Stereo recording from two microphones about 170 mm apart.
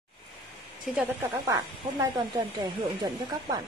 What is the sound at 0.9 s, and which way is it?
Speech, 15° right (ahead or behind).